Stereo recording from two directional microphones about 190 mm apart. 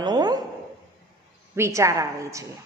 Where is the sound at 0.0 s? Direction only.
20° right (ahead or behind).